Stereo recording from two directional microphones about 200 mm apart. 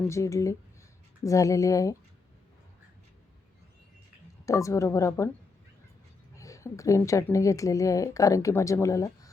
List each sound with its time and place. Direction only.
0.1 s a woman's voice: 15° left (ahead or behind)
4.4 s a woman's voice: 15° left (ahead or behind)
6.3 s a woman's voice: 15° left (ahead or behind)